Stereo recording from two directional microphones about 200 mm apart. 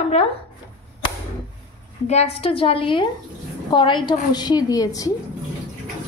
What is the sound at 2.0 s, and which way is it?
Speech, 30° left (ahead or behind).